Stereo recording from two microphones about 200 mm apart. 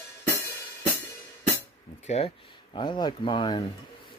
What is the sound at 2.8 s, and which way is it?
Speech, 25° left (ahead or behind).